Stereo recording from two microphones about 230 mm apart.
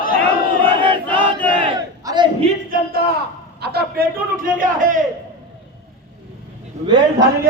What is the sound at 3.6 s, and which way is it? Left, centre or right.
A man's voice, right.